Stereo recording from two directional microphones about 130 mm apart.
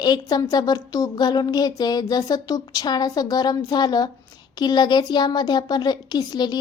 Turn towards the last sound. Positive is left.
turn(degrees=30)  # may be behind; listen again after turning